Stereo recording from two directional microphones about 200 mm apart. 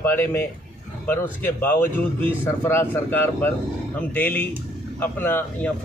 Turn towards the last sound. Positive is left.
turn(degrees=10)  # may be behind; listen again after turning